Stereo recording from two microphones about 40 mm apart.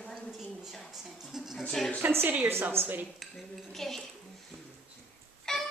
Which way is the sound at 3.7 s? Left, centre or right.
Centre.